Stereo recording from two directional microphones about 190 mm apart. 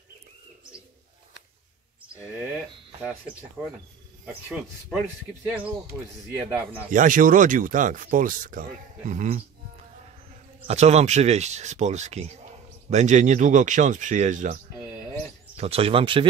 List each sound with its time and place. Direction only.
5.4 s a man's voice: 10° right (ahead or behind)
6.9 s speech: 45° right (ahead or behind)
10.7 s speech: 35° right (ahead or behind)